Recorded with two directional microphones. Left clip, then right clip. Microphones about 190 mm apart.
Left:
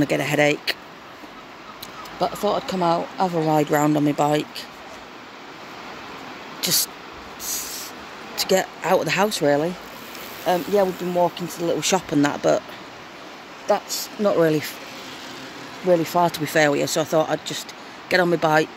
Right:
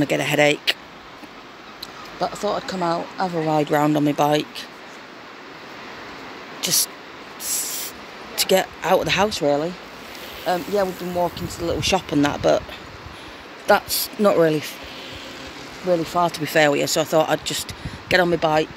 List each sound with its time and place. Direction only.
0.0 s speech: centre (ahead or behind)
2.8 s speech: 15° left (ahead or behind); by 4.5 s 5° right (ahead or behind)
6.6 s a sound: 10° left (ahead or behind)
8.4 s speech: 5° right (ahead or behind)
9.3 s speech: 15° left (ahead or behind)
13.7 s speech: 20° right (ahead or behind)
15.9 s speech: 20° left (ahead or behind)
16.4 s speech: centre (ahead or behind)
18.1 s speech: 5° left (ahead or behind)